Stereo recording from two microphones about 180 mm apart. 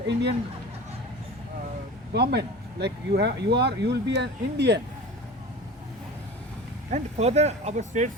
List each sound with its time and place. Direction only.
0.1 s speech: 70° right (ahead or behind)
2.1 s speech: 65° right (ahead or behind)
6.9 s speech: 35° right (ahead or behind)